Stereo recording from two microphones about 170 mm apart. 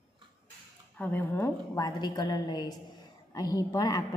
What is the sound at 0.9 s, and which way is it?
A woman's voice, 10° left (ahead or behind).